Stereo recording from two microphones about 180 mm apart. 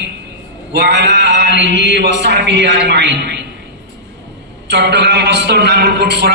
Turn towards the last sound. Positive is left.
turn(degrees=-65)  # may be behind; listen again after turning